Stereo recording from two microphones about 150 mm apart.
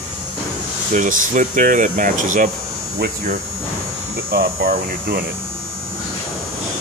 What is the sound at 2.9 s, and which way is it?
Hum, 90° right.